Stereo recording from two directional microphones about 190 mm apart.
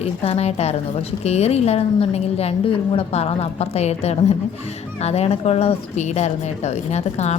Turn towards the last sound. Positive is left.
turn(degrees=35)  # may be behind; listen again after turning